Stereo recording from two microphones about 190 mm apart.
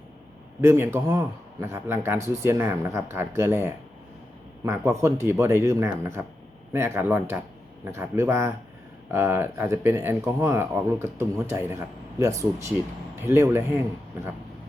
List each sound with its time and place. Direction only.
0.6 s speech: 15° right (ahead or behind)